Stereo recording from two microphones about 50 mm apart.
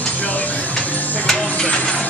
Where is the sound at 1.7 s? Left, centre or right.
Left.